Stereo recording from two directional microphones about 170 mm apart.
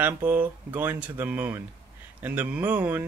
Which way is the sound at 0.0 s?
10° right (ahead or behind).